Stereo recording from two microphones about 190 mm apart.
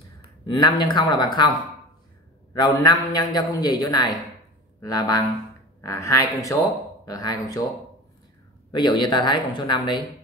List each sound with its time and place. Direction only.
0.5 s a man's voice: 25° left (ahead or behind)
2.5 s a man's voice: 20° left (ahead or behind)
8.7 s a man's voice: 25° left (ahead or behind)